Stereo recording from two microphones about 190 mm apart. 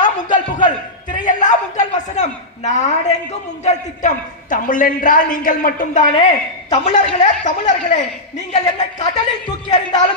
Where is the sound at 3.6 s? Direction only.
40° left (ahead or behind).